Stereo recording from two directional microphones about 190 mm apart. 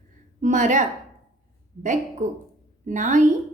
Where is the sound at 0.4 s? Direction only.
40° right (ahead or behind).